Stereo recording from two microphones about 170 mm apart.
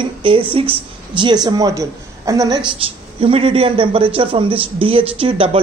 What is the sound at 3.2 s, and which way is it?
A man's voice, 35° right (ahead or behind).